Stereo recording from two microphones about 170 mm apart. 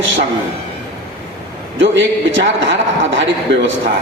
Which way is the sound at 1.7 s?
90° right.